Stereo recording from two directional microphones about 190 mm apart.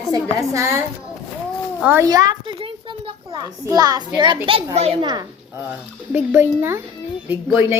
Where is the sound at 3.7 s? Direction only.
20° right (ahead or behind).